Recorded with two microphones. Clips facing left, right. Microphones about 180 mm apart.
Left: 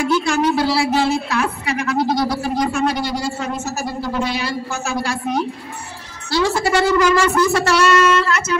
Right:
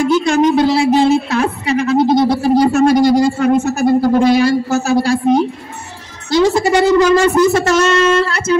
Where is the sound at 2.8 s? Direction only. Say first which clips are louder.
Right 11 dB; 45° right (ahead or behind).